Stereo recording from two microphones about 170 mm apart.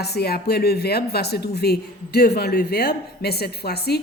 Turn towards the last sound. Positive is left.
turn(degrees=70)  # may be behind; listen again after turning